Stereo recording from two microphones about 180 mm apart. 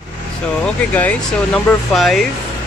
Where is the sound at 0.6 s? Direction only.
10° left (ahead or behind).